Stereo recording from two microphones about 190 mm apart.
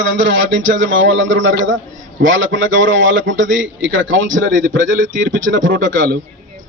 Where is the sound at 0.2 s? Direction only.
80° right.